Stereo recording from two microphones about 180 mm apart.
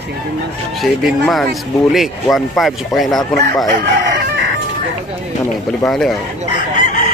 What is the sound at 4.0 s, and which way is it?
Chicken, 75° right (ahead or behind).